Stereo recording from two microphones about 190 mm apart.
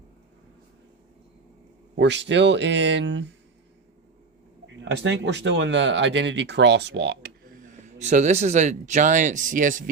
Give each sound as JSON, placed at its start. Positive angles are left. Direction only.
{"t": 2.0, "sound": "speech", "side_deg": -65}
{"t": 4.6, "sound": "speech", "side_deg": -70}